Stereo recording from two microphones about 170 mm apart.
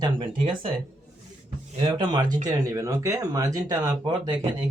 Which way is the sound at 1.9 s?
25° right (ahead or behind).